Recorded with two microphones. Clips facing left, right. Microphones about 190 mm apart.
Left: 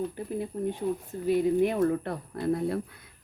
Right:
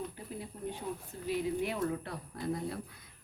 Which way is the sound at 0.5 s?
50° left (ahead or behind).